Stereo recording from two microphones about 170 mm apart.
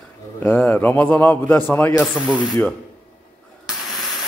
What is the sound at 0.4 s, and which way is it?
A man's voice, 10° left (ahead or behind).